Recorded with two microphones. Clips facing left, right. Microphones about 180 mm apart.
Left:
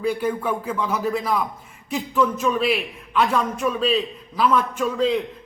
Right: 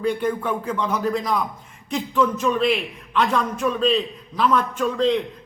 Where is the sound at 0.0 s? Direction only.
5° left (ahead or behind).